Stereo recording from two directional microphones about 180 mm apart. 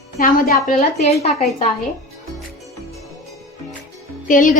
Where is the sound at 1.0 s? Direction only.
35° left (ahead or behind).